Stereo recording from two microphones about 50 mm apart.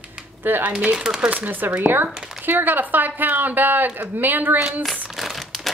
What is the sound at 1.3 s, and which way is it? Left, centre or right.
Speech, right.